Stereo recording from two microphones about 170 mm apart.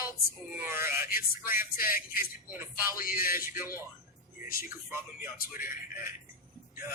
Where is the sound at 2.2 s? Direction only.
15° right (ahead or behind).